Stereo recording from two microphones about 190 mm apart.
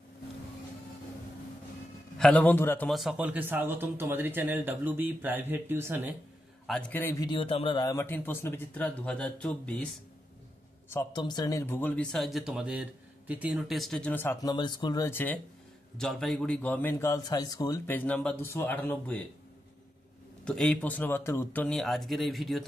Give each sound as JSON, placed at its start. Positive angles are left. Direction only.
{"t": 2.1, "sound": "a man's voice", "side_deg": 5}
{"t": 2.9, "sound": "speech", "side_deg": 0}
{"t": 6.7, "sound": "a man's voice", "side_deg": 10}
{"t": 10.9, "sound": "a man's voice", "side_deg": 20}
{"t": 14.5, "sound": "a man's voice", "side_deg": 20}
{"t": 20.4, "sound": "speech", "side_deg": 5}